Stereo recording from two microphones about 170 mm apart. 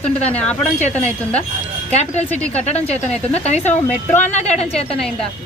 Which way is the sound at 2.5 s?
40° left (ahead or behind).